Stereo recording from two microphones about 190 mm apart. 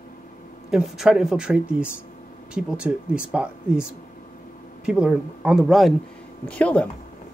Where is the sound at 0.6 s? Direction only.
Centre (ahead or behind).